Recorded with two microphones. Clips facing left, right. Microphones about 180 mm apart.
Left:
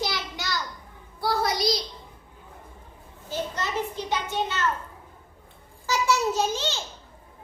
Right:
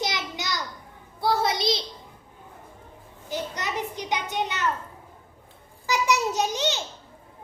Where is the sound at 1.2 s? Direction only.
25° right (ahead or behind).